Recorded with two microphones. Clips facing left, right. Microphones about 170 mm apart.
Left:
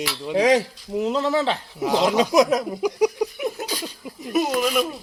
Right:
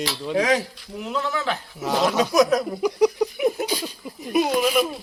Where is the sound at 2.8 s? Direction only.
10° left (ahead or behind).